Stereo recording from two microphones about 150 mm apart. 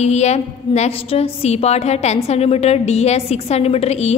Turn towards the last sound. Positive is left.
turn(degrees=45)  # may be behind; listen again after turning